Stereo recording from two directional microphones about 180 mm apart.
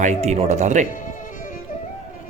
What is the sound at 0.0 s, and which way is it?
Speech, 40° right (ahead or behind).